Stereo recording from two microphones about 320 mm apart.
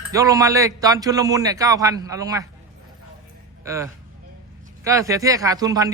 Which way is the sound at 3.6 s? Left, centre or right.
Centre.